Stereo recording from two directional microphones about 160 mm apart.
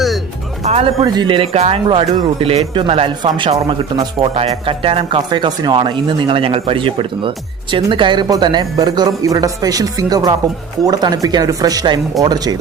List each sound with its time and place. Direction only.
0.6 s speech: 40° right (ahead or behind)
1.0 s speech: 25° right (ahead or behind)